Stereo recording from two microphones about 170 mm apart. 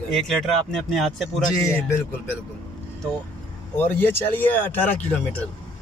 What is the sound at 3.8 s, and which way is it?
Speech, 10° left (ahead or behind).